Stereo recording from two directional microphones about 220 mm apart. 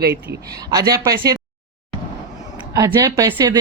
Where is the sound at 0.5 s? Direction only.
15° right (ahead or behind).